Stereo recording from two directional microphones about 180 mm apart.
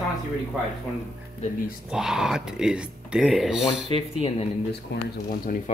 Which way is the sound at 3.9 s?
30° left (ahead or behind).